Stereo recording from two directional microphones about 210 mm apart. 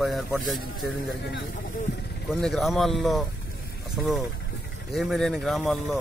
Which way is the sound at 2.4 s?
Centre (ahead or behind).